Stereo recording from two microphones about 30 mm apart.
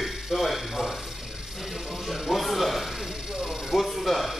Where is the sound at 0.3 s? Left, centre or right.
Centre.